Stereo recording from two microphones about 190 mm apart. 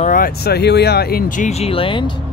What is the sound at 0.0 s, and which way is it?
Speech, 45° left (ahead or behind).